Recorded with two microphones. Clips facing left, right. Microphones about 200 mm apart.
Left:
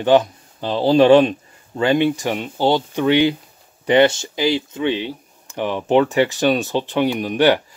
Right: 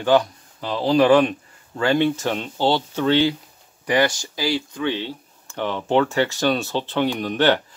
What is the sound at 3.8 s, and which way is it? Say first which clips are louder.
Speech: left 6 dB; 25° left (ahead or behind).